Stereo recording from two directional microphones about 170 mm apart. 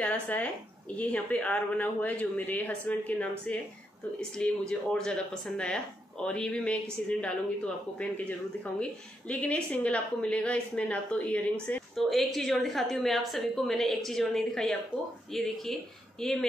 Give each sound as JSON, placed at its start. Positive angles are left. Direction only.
{"t": 0.0, "sound": "speech", "side_deg": 5}
{"t": 9.3, "sound": "speech", "side_deg": 10}